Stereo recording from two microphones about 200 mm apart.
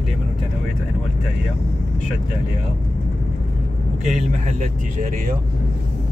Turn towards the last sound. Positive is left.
turn(degrees=-35)  # may be behind; listen again after turning